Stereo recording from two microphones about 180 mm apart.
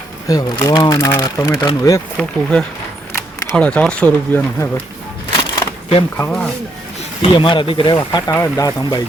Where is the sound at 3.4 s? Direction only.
5° left (ahead or behind).